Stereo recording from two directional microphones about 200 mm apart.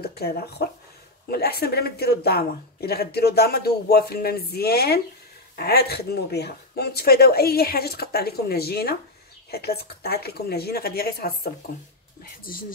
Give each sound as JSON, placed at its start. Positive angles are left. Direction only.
{"t": 0.0, "sound": "speech", "side_deg": 50}